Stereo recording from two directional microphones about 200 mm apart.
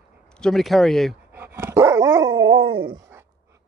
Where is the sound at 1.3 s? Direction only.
10° right (ahead or behind).